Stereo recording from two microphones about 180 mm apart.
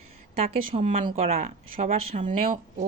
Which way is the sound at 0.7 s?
40° right (ahead or behind).